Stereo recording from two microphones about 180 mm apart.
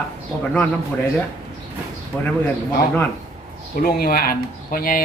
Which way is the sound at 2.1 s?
5° left (ahead or behind).